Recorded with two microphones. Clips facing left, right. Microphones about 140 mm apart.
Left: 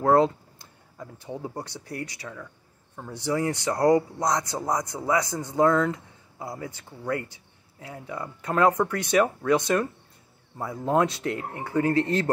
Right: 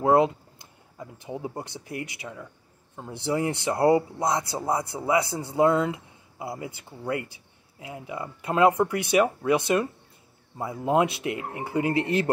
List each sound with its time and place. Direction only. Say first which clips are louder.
0.9 s speech: right 1 dB; 20° right (ahead or behind)
3.7 s speech: even; 10° right (ahead or behind)